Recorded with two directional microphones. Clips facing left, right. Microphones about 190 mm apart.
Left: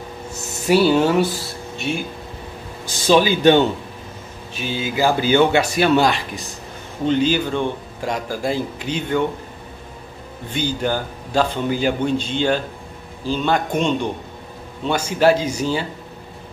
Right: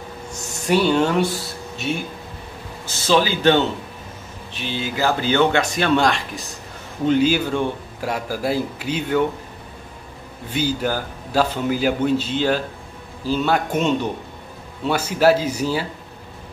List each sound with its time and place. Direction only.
0.3 s speech: 5° left (ahead or behind)
2.8 s speech: 15° left (ahead or behind)
4.7 s a man's voice: 10° left (ahead or behind); by 9.2 s 5° right (ahead or behind)
10.5 s a man's voice: 5° right (ahead or behind)